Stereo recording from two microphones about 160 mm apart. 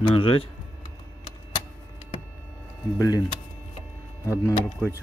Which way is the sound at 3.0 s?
25° left (ahead or behind).